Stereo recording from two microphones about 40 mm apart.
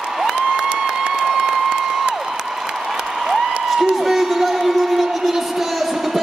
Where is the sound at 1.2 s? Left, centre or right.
Centre.